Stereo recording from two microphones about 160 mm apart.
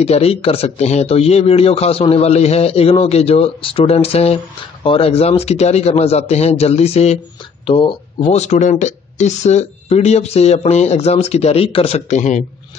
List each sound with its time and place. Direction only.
0.0 s speech: 40° left (ahead or behind)